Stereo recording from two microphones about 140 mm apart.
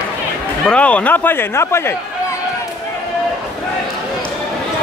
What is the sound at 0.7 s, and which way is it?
Speech, 10° left (ahead or behind).